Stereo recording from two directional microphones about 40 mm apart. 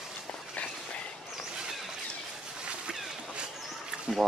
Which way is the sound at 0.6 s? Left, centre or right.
Left.